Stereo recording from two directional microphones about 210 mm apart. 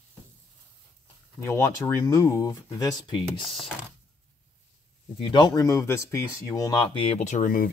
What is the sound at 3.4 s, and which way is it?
Speech, centre (ahead or behind).